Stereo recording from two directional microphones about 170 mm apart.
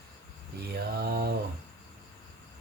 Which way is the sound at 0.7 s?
65° right (ahead or behind).